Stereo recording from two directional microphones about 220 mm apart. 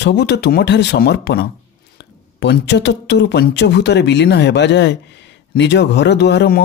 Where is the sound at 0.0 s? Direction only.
50° left (ahead or behind).